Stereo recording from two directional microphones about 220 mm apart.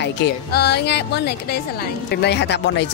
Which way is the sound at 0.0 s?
50° left (ahead or behind).